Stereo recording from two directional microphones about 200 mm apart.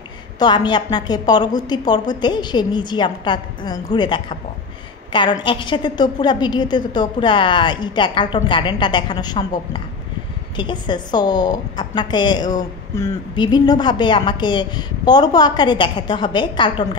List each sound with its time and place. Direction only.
0.4 s a woman's voice: 20° left (ahead or behind)
5.4 s a woman's voice: 25° left (ahead or behind)
10.5 s a woman's voice: 20° left (ahead or behind)